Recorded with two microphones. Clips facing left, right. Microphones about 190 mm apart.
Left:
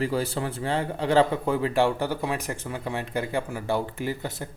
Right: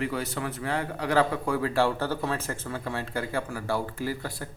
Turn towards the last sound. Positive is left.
turn(degrees=20)  # may be behind; listen again after turning